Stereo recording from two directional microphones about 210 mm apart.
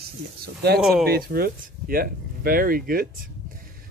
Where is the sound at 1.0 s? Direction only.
45° right (ahead or behind).